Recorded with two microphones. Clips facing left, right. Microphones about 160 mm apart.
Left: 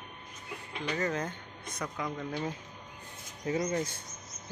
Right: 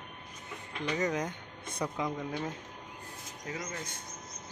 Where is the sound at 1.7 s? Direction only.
30° right (ahead or behind).